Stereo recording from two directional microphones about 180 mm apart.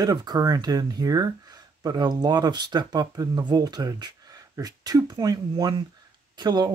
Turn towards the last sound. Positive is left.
turn(degrees=-25)  # may be behind; listen again after turning